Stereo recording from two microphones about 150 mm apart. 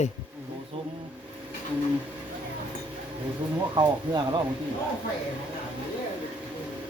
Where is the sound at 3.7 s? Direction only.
30° right (ahead or behind).